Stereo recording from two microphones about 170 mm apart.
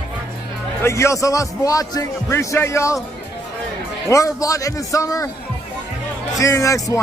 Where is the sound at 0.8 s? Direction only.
15° left (ahead or behind).